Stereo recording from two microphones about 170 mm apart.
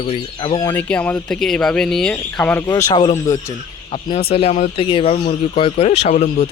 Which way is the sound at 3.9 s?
35° left (ahead or behind).